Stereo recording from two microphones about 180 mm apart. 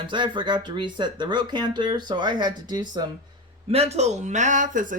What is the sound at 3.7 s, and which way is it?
Speech, 35° right (ahead or behind).